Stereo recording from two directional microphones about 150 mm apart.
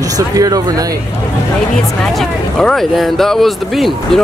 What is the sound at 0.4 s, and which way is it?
Speech, 25° right (ahead or behind).